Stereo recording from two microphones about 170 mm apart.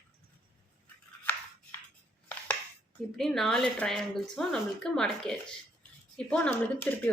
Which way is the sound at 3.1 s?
Centre (ahead or behind).